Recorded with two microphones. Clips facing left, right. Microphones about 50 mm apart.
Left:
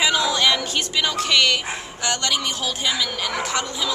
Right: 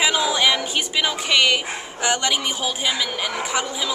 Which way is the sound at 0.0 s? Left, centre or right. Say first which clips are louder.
Even; centre.